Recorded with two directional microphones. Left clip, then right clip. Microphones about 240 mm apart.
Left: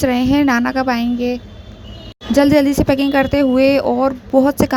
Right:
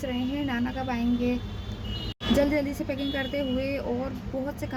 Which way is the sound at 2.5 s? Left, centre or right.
Left.